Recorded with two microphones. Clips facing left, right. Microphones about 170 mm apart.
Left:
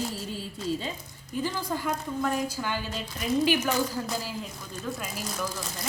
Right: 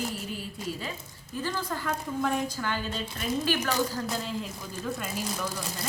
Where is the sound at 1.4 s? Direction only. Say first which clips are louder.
Left 2 dB; 15° left (ahead or behind).